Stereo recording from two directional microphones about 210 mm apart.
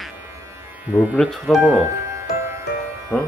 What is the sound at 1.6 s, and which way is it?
Music, 15° right (ahead or behind).